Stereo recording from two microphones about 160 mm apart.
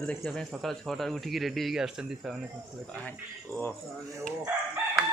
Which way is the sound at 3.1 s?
10° left (ahead or behind).